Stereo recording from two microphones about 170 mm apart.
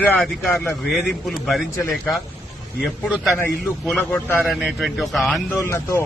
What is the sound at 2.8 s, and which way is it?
A man's voice, centre (ahead or behind).